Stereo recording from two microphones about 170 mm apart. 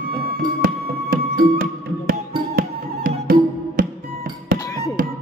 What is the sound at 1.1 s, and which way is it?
Music, 60° right (ahead or behind).